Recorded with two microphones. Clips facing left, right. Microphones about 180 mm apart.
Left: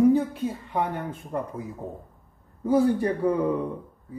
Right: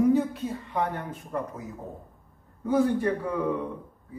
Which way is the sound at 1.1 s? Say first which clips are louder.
Left 2 dB; 25° left (ahead or behind).